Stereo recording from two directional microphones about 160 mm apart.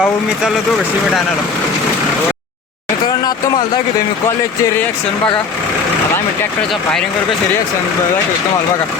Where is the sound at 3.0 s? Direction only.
25° left (ahead or behind).